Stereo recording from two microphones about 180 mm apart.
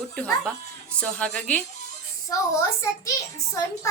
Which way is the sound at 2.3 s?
20° left (ahead or behind).